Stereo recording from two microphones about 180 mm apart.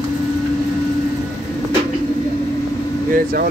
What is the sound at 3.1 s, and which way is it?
Speech, 55° right (ahead or behind).